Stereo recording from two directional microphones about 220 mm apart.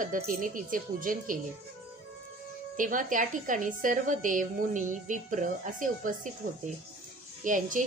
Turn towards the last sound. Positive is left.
turn(degrees=-35)  # may be behind; listen again after turning